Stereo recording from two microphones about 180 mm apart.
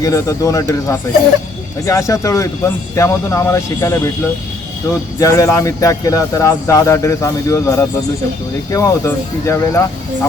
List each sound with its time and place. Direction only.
0.0 s speech: 20° left (ahead or behind)
5.2 s speech: 15° left (ahead or behind)